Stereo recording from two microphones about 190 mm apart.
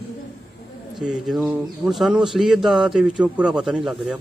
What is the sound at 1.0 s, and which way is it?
Speech, centre (ahead or behind).